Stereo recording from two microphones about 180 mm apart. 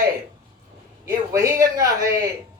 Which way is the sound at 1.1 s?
20° right (ahead or behind).